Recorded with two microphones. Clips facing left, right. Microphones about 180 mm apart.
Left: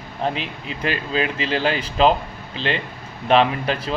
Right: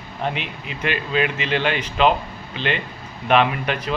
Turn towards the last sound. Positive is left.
turn(degrees=30)  # may be behind; listen again after turning